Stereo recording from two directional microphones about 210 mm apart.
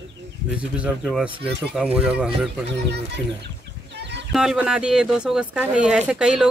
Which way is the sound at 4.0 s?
55° right (ahead or behind).